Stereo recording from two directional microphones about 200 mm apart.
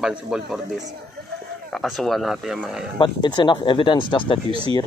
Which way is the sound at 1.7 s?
Centre (ahead or behind).